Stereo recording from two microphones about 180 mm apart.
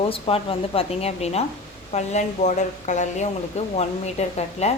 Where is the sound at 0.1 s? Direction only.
30° left (ahead or behind).